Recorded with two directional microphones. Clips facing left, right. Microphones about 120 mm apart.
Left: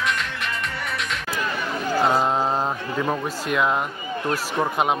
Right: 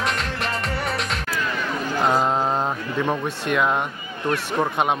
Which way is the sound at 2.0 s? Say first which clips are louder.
Right 2 dB; centre (ahead or behind).